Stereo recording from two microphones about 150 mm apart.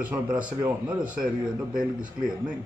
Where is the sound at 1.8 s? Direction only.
65° right (ahead or behind).